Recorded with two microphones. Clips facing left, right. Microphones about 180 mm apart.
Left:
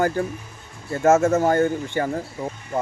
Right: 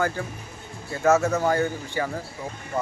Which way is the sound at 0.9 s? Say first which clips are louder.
Left 4 dB; 45° left (ahead or behind).